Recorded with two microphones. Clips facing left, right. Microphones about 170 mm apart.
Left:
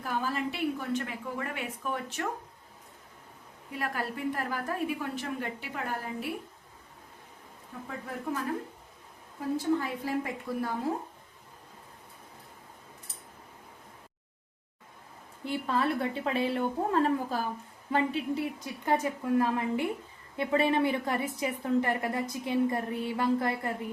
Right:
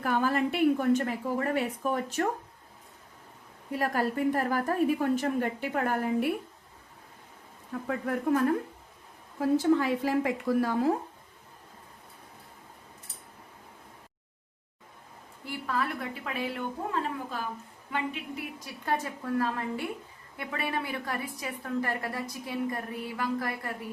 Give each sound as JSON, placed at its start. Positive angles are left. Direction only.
{"t": 0.0, "sound": "a woman's voice", "side_deg": -60}
{"t": 3.7, "sound": "a woman's voice", "side_deg": -40}
{"t": 7.9, "sound": "speech", "side_deg": -65}
{"t": 9.7, "sound": "a woman's voice", "side_deg": -85}
{"t": 15.4, "sound": "a woman's voice", "side_deg": 25}
{"t": 18.6, "sound": "a woman's voice", "side_deg": 20}